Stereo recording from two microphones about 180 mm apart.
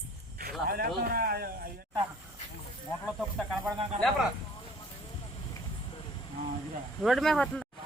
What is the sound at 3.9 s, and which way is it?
Speech, 40° right (ahead or behind).